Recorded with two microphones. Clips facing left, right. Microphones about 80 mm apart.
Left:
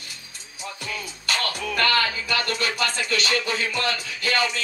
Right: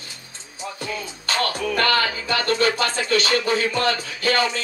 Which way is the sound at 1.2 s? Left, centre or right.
Right.